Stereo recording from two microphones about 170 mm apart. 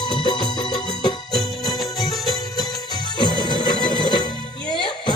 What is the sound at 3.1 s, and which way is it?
Music, 25° left (ahead or behind).